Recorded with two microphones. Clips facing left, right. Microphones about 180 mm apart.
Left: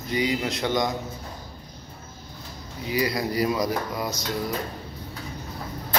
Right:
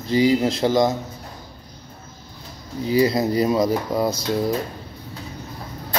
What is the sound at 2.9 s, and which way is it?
Speech, 25° right (ahead or behind).